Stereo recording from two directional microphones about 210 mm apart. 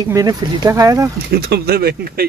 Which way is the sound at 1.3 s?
50° right (ahead or behind).